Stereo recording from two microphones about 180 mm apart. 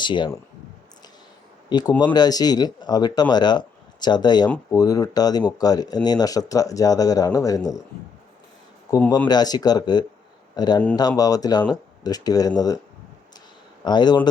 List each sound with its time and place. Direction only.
0.0 s speech: 25° left (ahead or behind)
1.7 s speech: 25° left (ahead or behind)
9.0 s speech: 20° left (ahead or behind)
13.8 s speech: 25° left (ahead or behind)